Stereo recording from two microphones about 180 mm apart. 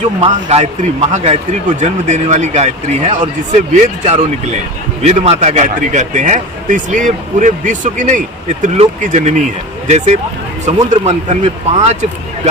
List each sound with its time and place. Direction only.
0.2 s a man's voice: 35° right (ahead or behind)